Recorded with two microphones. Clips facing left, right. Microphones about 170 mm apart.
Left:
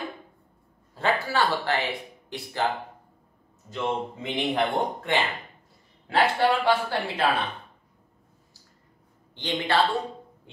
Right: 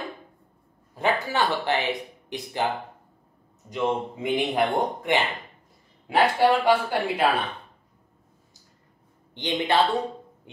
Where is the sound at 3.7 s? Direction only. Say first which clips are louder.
Right 3 dB; 15° right (ahead or behind).